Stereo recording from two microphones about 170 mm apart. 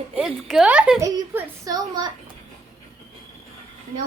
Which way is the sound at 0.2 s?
5° right (ahead or behind).